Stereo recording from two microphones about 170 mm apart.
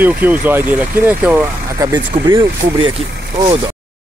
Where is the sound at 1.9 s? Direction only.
25° right (ahead or behind).